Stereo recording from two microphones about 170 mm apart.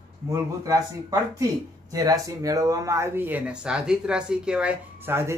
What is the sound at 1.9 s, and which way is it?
Speech, 20° right (ahead or behind).